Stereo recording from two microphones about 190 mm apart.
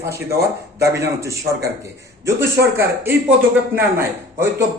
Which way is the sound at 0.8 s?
15° right (ahead or behind).